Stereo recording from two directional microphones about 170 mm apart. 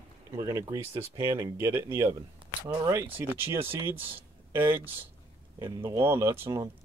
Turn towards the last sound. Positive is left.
turn(degrees=-15)  # may be behind; listen again after turning